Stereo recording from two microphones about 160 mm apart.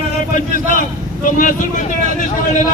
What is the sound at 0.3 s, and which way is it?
A man's voice, 55° left (ahead or behind).